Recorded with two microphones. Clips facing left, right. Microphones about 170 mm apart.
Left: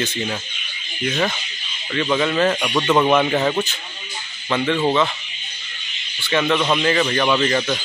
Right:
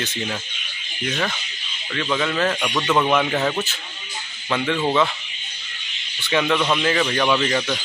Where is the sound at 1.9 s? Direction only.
10° left (ahead or behind).